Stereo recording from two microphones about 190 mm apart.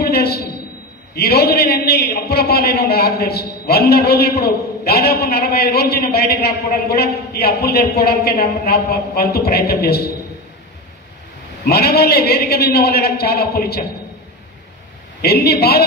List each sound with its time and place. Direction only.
0.0 s a sound: 55° left (ahead or behind)
1.1 s a man's voice: 55° left (ahead or behind)
11.6 s a man's voice: 55° left (ahead or behind)
15.2 s a man's voice: 55° left (ahead or behind)